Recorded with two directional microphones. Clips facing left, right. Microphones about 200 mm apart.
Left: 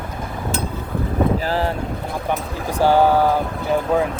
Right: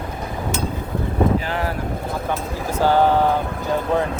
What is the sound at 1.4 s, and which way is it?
Boat, 30° left (ahead or behind).